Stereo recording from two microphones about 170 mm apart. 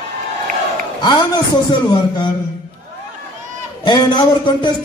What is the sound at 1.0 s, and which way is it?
Speech, 25° left (ahead or behind).